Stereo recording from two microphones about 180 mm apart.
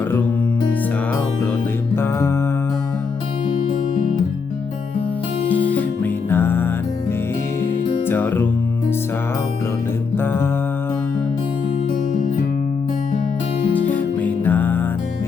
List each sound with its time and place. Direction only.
2.0 s music: 15° left (ahead or behind)
5.5 s music: 10° left (ahead or behind)
8.0 s music: 10° left (ahead or behind)
10.2 s mantra: 10° left (ahead or behind)
13.9 s music: 10° left (ahead or behind)